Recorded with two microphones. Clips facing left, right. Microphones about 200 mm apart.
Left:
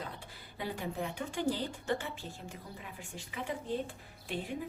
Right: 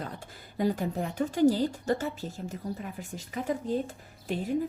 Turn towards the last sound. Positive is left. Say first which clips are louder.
# right 7 dB
turn(degrees=-40)  # may be behind; listen again after turning